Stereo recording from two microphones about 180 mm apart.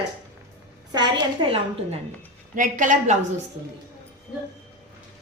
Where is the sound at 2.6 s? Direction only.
45° right (ahead or behind).